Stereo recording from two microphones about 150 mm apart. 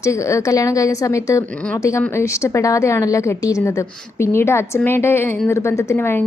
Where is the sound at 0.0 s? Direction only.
20° left (ahead or behind).